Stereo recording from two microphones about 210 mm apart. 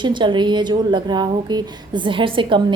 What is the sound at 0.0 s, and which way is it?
A woman's voice, 20° right (ahead or behind).